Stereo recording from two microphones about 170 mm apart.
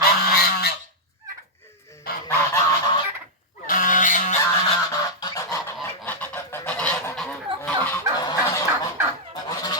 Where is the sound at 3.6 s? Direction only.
55° left (ahead or behind).